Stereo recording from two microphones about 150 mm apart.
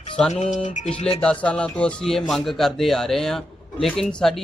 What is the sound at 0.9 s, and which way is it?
Speech, 40° left (ahead or behind).